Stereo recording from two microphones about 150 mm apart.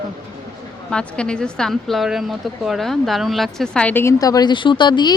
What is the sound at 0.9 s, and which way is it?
A woman's voice, 5° left (ahead or behind).